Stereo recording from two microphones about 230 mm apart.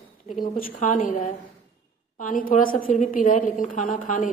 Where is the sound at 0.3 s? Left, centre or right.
Left.